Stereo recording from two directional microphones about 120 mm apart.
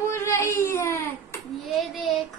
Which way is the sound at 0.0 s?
25° left (ahead or behind).